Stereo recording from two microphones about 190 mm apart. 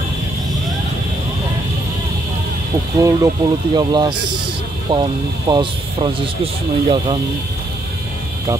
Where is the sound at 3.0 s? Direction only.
20° right (ahead or behind).